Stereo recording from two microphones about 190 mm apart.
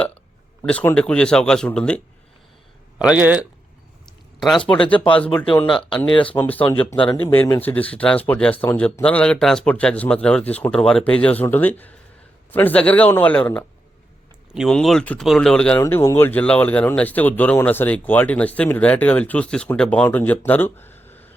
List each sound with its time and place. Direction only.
0.6 s speech: 5° left (ahead or behind)
3.0 s speech: 5° right (ahead or behind)
6.1 s speech: 25° left (ahead or behind)
6.4 s speech: 10° left (ahead or behind)
6.9 s speech: 25° left (ahead or behind)
7.3 s speech: 15° left (ahead or behind)